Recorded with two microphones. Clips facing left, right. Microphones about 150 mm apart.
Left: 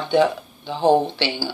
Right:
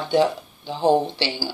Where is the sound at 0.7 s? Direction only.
20° left (ahead or behind).